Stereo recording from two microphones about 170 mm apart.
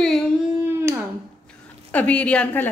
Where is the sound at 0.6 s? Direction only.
15° right (ahead or behind).